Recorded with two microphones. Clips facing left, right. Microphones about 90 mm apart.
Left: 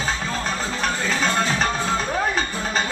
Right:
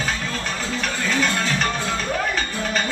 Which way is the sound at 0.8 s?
35° left (ahead or behind).